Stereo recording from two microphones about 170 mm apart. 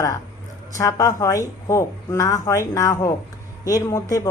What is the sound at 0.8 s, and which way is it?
Speech, 20° left (ahead or behind).